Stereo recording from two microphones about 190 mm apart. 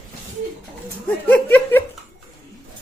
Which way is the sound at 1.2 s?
10° left (ahead or behind).